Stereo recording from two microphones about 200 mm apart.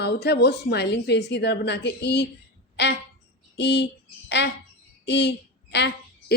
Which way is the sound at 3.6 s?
60° left (ahead or behind).